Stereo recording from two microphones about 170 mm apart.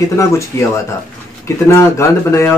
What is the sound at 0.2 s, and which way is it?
Speech, 15° left (ahead or behind).